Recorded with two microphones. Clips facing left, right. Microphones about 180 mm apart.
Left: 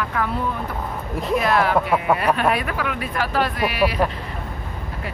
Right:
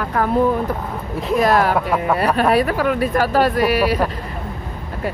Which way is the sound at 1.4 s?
40° right (ahead or behind).